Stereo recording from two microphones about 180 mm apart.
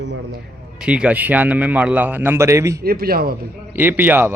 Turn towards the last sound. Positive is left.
turn(degrees=-10)  # may be behind; listen again after turning